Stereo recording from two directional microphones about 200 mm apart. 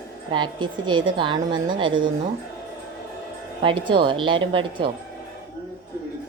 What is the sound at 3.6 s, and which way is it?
A woman's voice, 25° right (ahead or behind).